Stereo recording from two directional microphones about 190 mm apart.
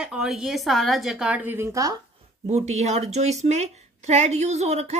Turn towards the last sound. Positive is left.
turn(degrees=-35)  # may be behind; listen again after turning